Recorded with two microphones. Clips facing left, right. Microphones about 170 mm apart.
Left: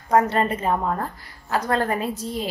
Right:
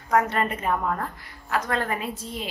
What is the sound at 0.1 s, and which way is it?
A woman's voice, 30° left (ahead or behind).